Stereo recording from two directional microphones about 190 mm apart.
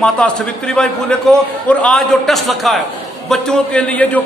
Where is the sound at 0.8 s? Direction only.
5° left (ahead or behind).